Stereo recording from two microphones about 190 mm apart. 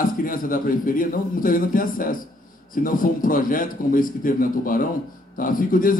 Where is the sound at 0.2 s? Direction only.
45° left (ahead or behind).